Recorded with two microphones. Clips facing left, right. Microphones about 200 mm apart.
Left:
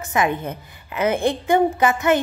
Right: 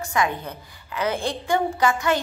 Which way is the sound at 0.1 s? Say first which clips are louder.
Left 4 dB; 20° left (ahead or behind).